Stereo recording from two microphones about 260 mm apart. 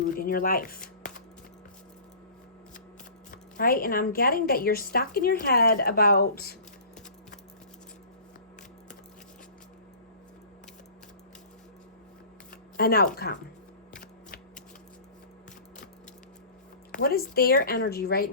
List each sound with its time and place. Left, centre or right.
0.0 s speech: left
3.3 s a woman's voice: left
12.7 s a woman's voice: left
16.9 s a woman's voice: left